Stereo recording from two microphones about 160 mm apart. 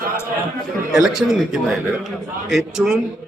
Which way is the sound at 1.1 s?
5° right (ahead or behind).